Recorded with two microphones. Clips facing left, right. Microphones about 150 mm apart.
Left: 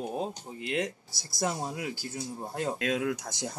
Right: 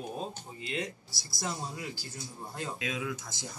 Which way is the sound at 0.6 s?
70° left (ahead or behind).